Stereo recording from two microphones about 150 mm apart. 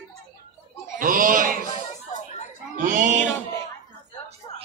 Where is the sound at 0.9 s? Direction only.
65° right (ahead or behind).